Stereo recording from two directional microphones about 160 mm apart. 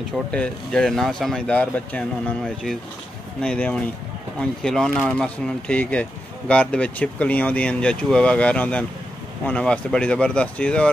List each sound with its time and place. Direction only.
0.3 s speech: 5° left (ahead or behind)